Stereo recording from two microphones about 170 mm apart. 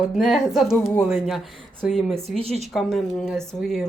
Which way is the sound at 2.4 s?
35° right (ahead or behind).